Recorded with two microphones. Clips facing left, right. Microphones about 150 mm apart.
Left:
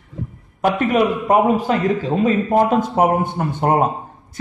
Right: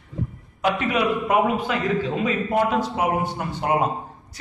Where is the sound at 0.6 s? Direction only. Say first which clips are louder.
Left 6 dB; 45° left (ahead or behind).